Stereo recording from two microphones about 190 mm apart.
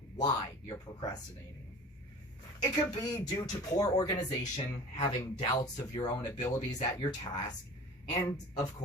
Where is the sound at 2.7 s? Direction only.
20° left (ahead or behind).